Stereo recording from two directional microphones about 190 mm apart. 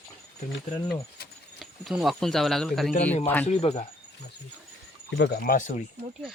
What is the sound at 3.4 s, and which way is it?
Speech, 35° left (ahead or behind).